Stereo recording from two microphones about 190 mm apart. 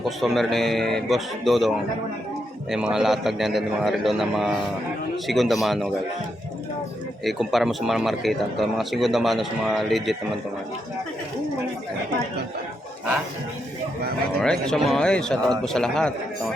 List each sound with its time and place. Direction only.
0.0 s a man's voice: centre (ahead or behind)
7.3 s a man's voice: centre (ahead or behind)
14.4 s a man's voice: 5° left (ahead or behind)